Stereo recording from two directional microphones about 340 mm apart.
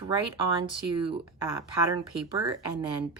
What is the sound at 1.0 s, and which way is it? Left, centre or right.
Speech, centre.